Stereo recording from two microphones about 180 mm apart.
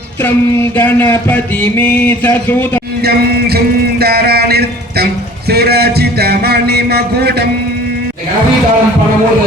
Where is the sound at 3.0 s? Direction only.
60° right (ahead or behind).